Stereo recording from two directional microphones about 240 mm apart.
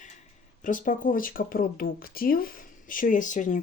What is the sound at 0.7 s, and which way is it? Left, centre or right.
Speech, left.